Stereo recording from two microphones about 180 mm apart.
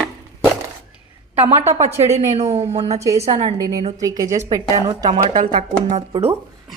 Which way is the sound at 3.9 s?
20° right (ahead or behind).